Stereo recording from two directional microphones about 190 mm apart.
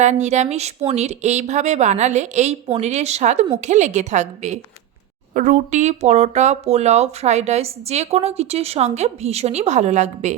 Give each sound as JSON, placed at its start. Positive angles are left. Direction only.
{"t": 0.0, "sound": "speech", "side_deg": -35}